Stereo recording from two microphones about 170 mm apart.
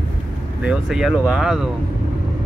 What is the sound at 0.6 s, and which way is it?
Speech, 5° right (ahead or behind).